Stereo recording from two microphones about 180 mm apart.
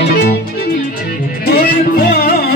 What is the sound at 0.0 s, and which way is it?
Music, 60° left (ahead or behind).